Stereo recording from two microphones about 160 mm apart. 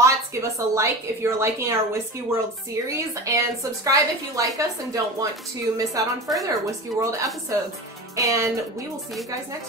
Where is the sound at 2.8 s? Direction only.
20° right (ahead or behind).